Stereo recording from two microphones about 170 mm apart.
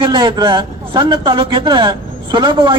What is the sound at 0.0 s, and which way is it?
A man's voice, 30° right (ahead or behind).